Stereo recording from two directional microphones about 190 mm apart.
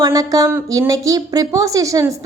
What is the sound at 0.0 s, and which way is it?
A woman's voice, 20° right (ahead or behind).